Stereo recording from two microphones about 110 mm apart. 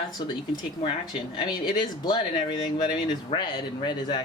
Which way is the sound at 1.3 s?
40° left (ahead or behind).